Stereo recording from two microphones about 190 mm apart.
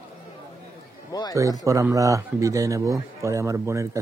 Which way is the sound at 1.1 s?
20° left (ahead or behind).